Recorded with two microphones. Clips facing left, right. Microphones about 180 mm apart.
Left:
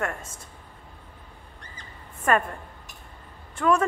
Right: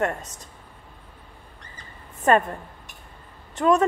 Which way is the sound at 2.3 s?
25° right (ahead or behind).